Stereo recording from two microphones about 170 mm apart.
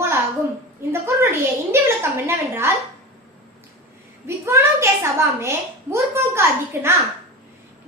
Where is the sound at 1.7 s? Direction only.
15° right (ahead or behind).